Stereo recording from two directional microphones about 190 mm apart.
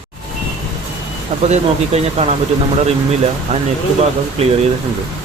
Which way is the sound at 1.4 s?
35° right (ahead or behind).